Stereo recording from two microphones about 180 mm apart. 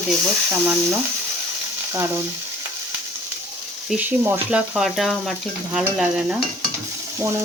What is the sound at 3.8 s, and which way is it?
Speech, 10° right (ahead or behind).